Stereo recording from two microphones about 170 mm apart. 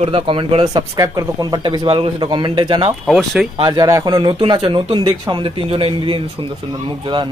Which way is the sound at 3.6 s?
25° right (ahead or behind).